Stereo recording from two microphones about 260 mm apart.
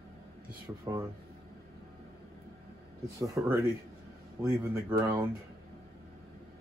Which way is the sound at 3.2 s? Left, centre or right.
Centre.